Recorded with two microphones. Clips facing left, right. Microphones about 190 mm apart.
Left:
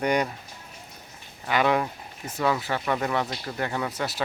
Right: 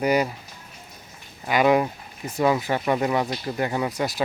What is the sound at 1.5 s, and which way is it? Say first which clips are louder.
Speech: right 4 dB; 15° right (ahead or behind).